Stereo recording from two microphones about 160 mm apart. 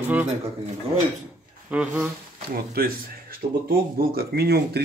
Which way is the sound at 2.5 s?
70° right (ahead or behind).